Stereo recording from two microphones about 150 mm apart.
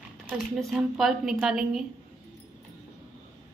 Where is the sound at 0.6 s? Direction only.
Centre (ahead or behind).